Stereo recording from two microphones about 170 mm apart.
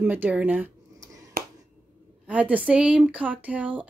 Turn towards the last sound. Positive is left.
turn(degrees=-10)  # may be behind; listen again after turning